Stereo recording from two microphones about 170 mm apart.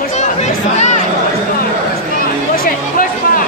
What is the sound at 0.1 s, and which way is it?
Chatter, 40° left (ahead or behind).